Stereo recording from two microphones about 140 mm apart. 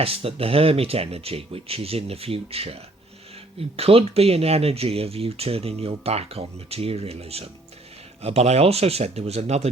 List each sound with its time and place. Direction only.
0.0 s speech: 45° right (ahead or behind)
3.8 s speech: 45° right (ahead or behind)